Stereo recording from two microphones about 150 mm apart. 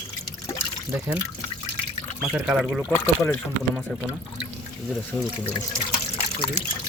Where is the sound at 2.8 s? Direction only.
15° left (ahead or behind).